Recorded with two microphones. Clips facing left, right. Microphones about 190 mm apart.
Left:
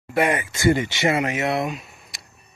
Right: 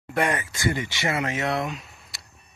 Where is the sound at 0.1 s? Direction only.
10° left (ahead or behind).